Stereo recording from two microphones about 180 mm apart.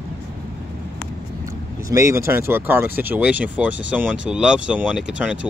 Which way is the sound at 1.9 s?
15° right (ahead or behind).